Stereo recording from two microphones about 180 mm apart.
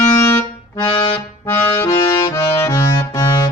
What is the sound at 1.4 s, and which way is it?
Accordion, 20° left (ahead or behind).